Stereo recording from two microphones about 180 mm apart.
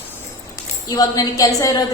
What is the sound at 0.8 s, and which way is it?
Speech, 20° left (ahead or behind).